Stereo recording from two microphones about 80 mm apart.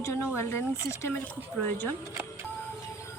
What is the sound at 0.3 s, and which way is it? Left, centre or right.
Speech, left.